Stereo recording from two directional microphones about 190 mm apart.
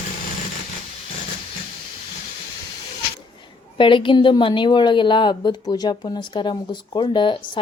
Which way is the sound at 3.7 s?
25° left (ahead or behind).